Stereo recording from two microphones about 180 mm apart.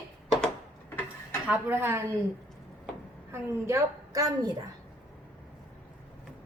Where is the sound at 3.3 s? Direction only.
15° right (ahead or behind).